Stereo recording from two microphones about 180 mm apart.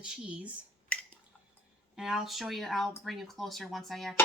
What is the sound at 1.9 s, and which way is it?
Speech, 5° right (ahead or behind).